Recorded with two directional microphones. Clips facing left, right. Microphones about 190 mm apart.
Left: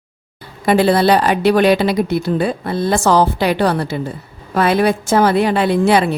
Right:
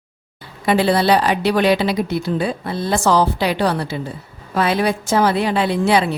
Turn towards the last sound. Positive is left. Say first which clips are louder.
# left 3 dB
turn(degrees=50)  # may be behind; listen again after turning